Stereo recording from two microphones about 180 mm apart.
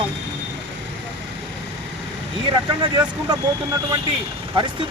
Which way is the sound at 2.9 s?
20° right (ahead or behind).